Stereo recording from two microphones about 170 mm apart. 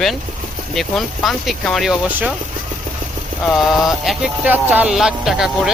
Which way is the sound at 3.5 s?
Centre (ahead or behind).